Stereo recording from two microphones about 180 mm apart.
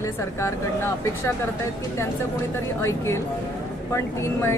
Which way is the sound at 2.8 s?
15° left (ahead or behind).